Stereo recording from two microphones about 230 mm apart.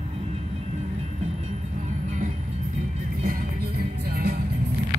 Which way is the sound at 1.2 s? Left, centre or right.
Right.